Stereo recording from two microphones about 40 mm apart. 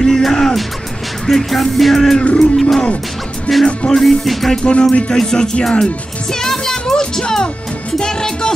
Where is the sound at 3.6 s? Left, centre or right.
Left.